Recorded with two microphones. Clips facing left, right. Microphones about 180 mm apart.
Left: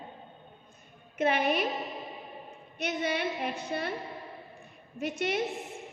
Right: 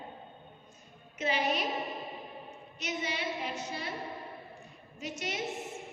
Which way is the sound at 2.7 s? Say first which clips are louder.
Left 5 dB; 60° left (ahead or behind).